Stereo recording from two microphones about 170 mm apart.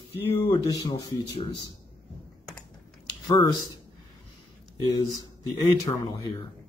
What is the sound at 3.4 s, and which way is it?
Speech, 25° left (ahead or behind).